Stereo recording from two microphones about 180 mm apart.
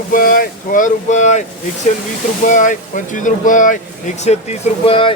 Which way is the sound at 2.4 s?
45° left (ahead or behind).